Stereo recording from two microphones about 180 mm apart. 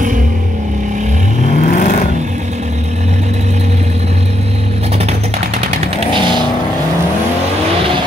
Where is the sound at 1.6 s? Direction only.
50° left (ahead or behind).